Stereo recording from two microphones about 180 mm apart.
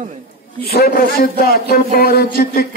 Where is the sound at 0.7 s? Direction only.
60° left (ahead or behind).